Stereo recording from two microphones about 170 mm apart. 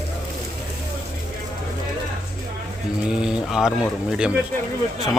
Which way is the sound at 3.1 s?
5° right (ahead or behind).